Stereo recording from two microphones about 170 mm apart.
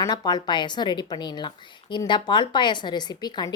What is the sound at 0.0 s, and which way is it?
A woman's voice, 25° left (ahead or behind).